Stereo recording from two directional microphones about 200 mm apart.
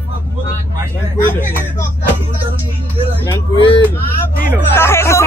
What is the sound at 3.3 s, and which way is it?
Speech, 25° left (ahead or behind).